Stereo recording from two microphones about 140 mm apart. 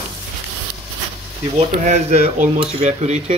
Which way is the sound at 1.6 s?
50° right (ahead or behind).